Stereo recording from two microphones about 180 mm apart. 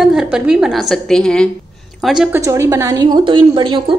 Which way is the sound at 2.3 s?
15° right (ahead or behind).